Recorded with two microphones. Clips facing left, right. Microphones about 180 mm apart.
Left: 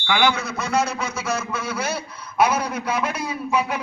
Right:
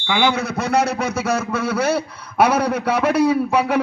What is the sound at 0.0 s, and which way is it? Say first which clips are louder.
Speech: right 2 dB; 25° right (ahead or behind).